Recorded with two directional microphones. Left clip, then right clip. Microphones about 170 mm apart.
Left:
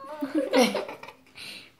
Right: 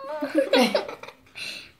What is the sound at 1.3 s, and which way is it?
Dishes, 35° right (ahead or behind).